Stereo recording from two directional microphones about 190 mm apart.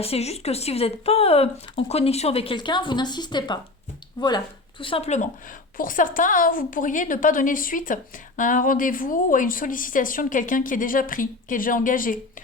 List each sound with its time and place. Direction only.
0.0 s a woman's voice: 30° left (ahead or behind)